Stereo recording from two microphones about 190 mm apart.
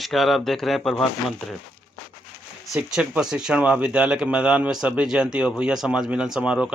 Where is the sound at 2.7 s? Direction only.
10° right (ahead or behind).